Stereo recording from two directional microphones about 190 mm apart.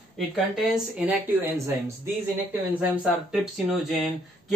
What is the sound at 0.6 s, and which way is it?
Speech, 5° right (ahead or behind).